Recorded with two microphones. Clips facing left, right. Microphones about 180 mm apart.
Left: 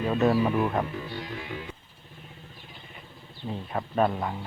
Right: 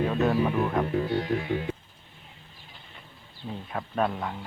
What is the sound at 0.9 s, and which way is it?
Speech, 55° right (ahead or behind).